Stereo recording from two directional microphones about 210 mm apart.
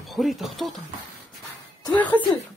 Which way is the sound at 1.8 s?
20° left (ahead or behind).